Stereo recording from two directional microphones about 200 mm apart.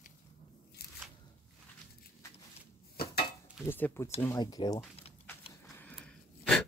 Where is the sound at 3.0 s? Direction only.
50° left (ahead or behind).